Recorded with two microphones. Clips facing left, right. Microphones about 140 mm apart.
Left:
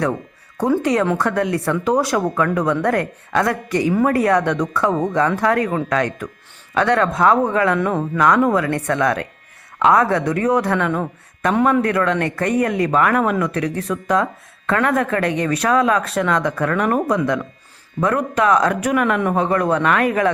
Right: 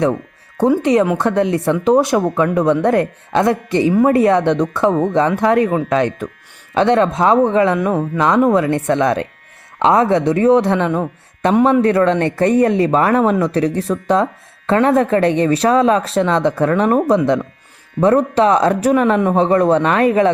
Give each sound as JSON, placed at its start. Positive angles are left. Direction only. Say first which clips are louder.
{"t": 0.8, "sound": "speech", "louder": "right 4 dB", "side_deg": -20}